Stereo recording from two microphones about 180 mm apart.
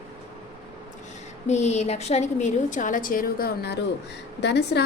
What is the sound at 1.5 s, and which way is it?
A woman's voice, 40° left (ahead or behind).